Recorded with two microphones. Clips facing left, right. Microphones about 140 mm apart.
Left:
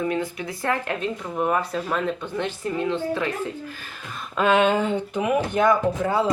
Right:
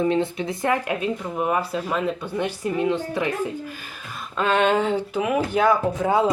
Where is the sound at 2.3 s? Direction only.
15° right (ahead or behind).